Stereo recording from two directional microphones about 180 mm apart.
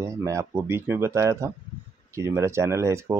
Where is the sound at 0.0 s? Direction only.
15° right (ahead or behind).